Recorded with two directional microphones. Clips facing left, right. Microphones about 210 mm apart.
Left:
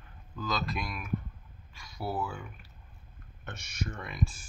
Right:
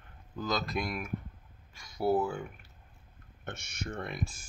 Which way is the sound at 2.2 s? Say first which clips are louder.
Right 5 dB; 50° right (ahead or behind).